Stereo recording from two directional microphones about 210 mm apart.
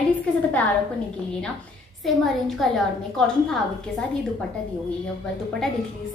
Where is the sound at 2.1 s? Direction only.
Centre (ahead or behind).